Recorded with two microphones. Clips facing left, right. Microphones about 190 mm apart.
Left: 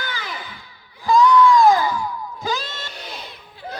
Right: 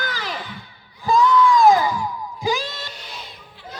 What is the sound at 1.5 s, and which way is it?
Music, 20° right (ahead or behind).